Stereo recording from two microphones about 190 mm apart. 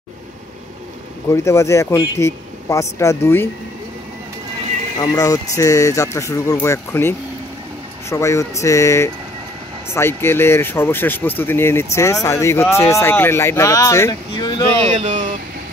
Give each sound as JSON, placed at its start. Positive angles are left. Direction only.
{"t": 1.3, "sound": "speech", "side_deg": 15}
{"t": 5.0, "sound": "speech", "side_deg": 15}
{"t": 14.9, "sound": "speech", "side_deg": -40}